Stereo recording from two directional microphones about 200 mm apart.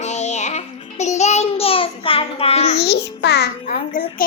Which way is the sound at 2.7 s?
55° left (ahead or behind).